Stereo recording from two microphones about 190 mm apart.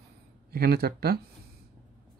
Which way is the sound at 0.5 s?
50° right (ahead or behind).